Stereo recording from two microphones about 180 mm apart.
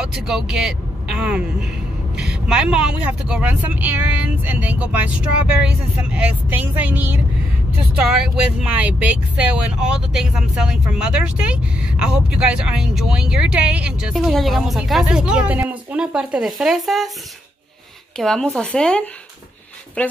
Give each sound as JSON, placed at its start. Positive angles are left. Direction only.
{"t": 0.0, "sound": "speech", "side_deg": -5}
{"t": 18.1, "sound": "speech", "side_deg": 5}